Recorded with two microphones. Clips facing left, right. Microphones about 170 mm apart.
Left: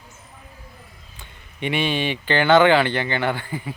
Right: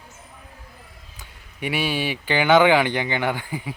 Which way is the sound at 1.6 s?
5° right (ahead or behind).